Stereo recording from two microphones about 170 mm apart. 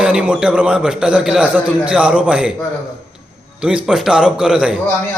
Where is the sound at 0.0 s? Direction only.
5° right (ahead or behind).